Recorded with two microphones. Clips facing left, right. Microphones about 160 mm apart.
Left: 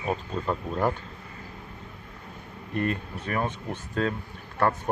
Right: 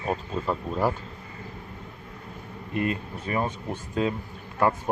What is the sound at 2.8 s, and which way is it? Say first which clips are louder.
Speech: right 1 dB; 10° right (ahead or behind).